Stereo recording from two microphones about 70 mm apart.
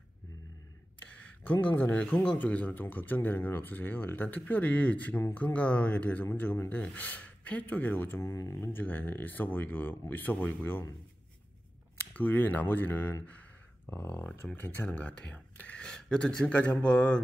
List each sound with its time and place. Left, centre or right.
1.4 s speech: left
8.2 s speech: left
8.5 s speech: left
12.1 s speech: left
14.3 s speech: left
14.9 s speech: centre